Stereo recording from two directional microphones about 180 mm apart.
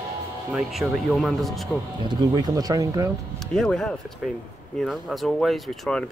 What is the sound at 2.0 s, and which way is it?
Speech, 20° right (ahead or behind).